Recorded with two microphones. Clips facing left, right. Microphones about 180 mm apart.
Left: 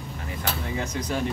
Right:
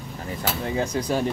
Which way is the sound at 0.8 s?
30° right (ahead or behind).